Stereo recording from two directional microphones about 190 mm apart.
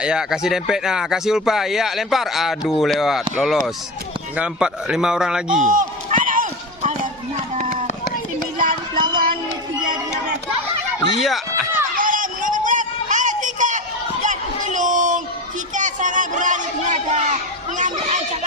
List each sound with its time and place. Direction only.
0.0 s speech: 5° right (ahead or behind)
5.5 s run: 40° right (ahead or behind)
9.1 s run: 50° right (ahead or behind)
11.2 s run: centre (ahead or behind)
11.9 s a sound: 45° right (ahead or behind)